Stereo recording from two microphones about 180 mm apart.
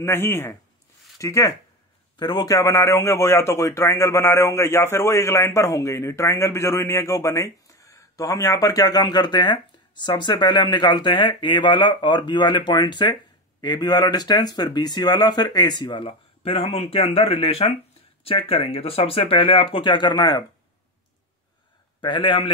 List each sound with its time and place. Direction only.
0.0 s a man's voice: 15° left (ahead or behind)
22.0 s a man's voice: 25° left (ahead or behind)